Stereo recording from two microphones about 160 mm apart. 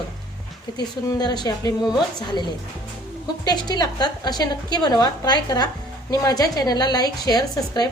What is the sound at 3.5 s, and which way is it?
A woman's voice, 25° left (ahead or behind).